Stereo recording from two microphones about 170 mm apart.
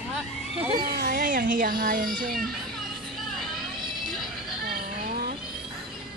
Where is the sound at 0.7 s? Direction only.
65° right (ahead or behind).